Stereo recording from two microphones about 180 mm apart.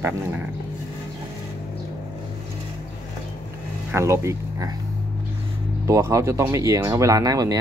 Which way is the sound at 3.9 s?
15° right (ahead or behind).